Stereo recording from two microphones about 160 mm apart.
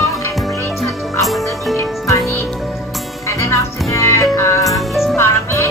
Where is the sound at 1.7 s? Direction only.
20° left (ahead or behind).